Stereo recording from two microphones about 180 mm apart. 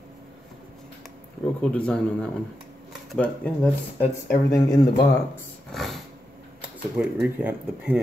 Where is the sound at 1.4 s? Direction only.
5° left (ahead or behind).